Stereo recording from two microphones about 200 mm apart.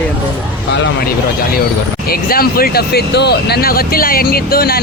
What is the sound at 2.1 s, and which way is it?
Speech, 50° left (ahead or behind).